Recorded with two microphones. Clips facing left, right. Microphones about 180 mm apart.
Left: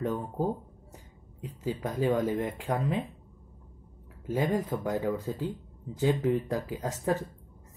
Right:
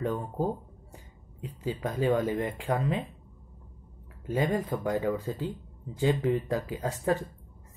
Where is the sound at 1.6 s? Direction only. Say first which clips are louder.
Even; 5° left (ahead or behind).